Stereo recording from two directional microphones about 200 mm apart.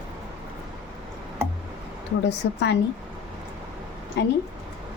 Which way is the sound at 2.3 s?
60° left (ahead or behind).